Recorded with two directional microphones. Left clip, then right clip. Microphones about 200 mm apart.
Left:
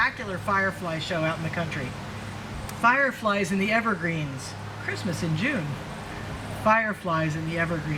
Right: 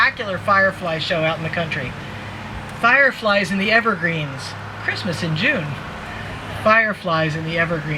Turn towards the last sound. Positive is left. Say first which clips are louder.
# right 7 dB
turn(degrees=-20)  # may be behind; listen again after turning